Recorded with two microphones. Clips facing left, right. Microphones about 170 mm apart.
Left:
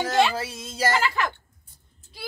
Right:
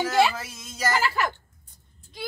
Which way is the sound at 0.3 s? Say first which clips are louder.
Left 5 dB; 30° left (ahead or behind).